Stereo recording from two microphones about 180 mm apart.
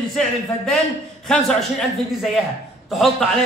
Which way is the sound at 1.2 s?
5° left (ahead or behind).